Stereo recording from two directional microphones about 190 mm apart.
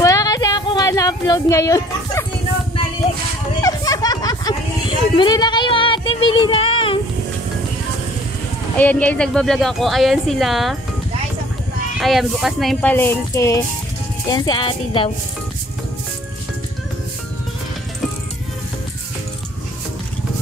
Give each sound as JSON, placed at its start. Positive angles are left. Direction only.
{"t": 0.0, "sound": "a sound", "side_deg": 20}
{"t": 3.6, "sound": "music", "side_deg": 20}
{"t": 8.7, "sound": "speech", "side_deg": 10}
{"t": 12.0, "sound": "speech", "side_deg": 0}
{"t": 12.9, "sound": "speech", "side_deg": 15}